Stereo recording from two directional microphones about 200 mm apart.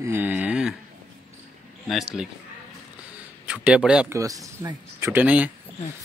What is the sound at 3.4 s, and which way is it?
Speech, 5° right (ahead or behind).